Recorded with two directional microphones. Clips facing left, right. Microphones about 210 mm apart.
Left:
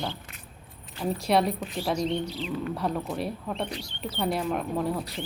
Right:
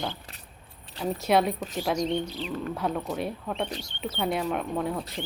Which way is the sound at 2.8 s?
Centre (ahead or behind).